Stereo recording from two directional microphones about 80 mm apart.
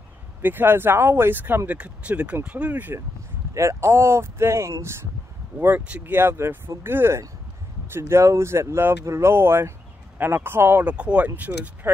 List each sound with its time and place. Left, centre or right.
0.4 s speech: right
3.5 s speech: right
5.9 s speech: right